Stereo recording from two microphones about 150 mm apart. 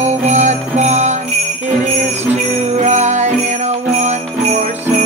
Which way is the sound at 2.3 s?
50° right (ahead or behind).